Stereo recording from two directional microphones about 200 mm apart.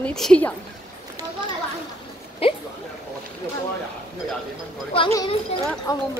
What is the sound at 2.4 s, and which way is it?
Speech, 30° left (ahead or behind).